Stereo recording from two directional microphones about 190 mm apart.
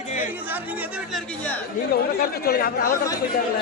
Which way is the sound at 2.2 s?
50° left (ahead or behind).